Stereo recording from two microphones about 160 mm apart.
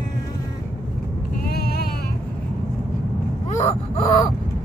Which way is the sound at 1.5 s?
80° left.